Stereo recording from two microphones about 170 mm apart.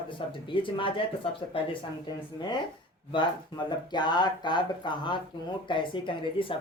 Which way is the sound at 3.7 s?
25° left (ahead or behind).